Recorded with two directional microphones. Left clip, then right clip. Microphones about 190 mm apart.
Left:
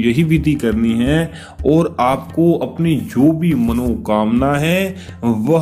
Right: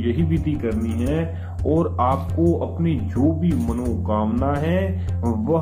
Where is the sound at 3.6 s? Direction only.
30° left (ahead or behind).